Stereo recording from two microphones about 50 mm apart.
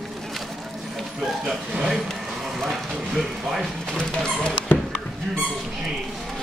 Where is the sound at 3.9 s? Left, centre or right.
Centre.